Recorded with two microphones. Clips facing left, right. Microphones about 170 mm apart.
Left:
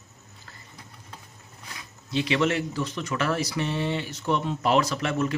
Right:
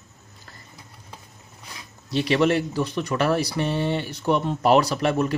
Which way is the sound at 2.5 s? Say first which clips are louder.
Right 4 dB; 35° right (ahead or behind).